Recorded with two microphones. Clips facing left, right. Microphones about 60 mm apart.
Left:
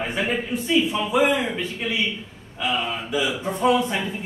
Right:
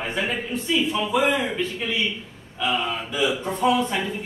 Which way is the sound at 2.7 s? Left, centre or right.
Centre.